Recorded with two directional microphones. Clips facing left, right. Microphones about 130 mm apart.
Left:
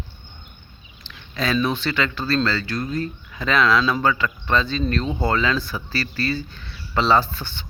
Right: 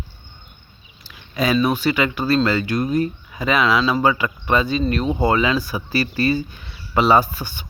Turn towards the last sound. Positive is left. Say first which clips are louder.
# right 3 dB
turn(degrees=-10)  # may be behind; listen again after turning